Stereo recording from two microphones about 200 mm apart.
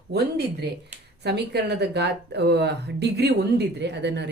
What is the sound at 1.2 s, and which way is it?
A woman's voice, 55° right (ahead or behind).